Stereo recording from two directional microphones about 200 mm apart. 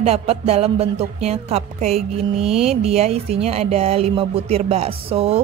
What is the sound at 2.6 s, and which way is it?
Speech, 30° right (ahead or behind).